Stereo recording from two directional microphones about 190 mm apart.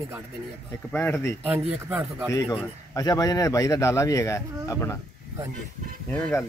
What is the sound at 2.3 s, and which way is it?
Speech, 20° left (ahead or behind).